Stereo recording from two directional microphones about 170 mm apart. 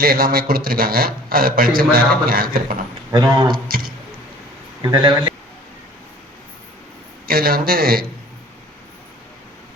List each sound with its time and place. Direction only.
0.0 s a man's voice: 60° right (ahead or behind)
4.8 s speech: 25° right (ahead or behind)
7.3 s a man's voice: 60° right (ahead or behind)